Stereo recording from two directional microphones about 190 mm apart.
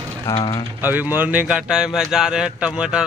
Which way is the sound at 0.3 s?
20° left (ahead or behind).